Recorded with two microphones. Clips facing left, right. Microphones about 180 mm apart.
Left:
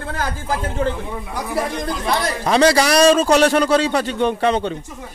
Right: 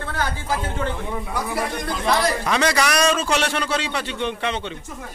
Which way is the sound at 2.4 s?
35° left (ahead or behind).